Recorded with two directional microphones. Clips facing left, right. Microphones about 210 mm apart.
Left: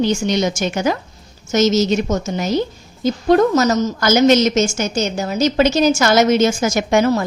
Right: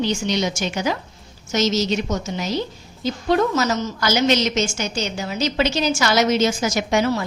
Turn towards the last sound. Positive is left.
turn(degrees=45)  # may be behind; listen again after turning